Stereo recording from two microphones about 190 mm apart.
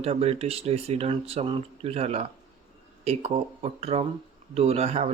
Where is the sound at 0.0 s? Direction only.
30° right (ahead or behind).